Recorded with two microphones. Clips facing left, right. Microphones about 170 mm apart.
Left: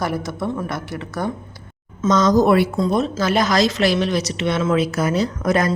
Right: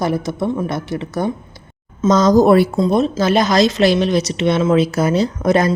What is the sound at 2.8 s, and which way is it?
A woman's voice, 25° right (ahead or behind).